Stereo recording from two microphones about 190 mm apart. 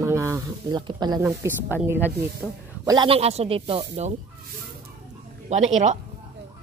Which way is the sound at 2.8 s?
25° right (ahead or behind).